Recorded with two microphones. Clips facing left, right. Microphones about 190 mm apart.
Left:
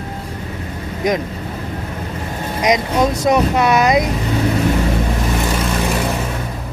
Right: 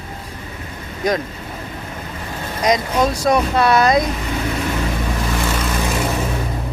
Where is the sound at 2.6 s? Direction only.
20° left (ahead or behind).